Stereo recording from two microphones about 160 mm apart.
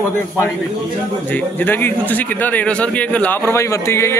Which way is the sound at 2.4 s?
10° left (ahead or behind).